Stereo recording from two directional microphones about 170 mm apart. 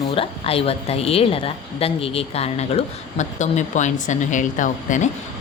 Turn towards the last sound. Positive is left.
turn(degrees=50)  # may be behind; listen again after turning